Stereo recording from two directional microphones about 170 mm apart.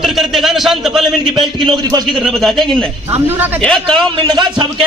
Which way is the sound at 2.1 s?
Centre (ahead or behind).